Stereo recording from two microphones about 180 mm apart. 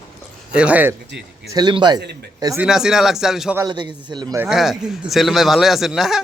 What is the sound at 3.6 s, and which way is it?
Speech, 25° right (ahead or behind).